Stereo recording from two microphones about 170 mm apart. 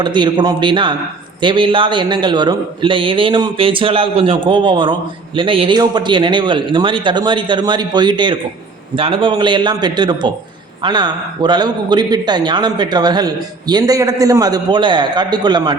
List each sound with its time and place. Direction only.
0.0 s a man's voice: 25° right (ahead or behind)